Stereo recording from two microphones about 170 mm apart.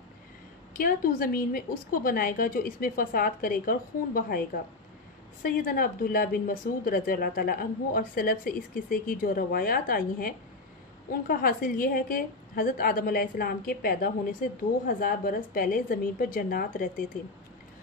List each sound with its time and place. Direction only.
0.7 s a woman's voice: 55° left (ahead or behind)
5.4 s a woman's voice: 55° left (ahead or behind)